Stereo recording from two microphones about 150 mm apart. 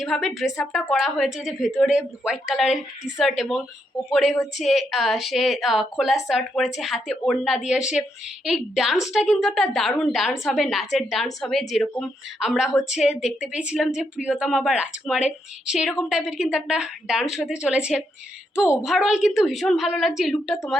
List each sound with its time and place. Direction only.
0.0 s a woman's voice: centre (ahead or behind)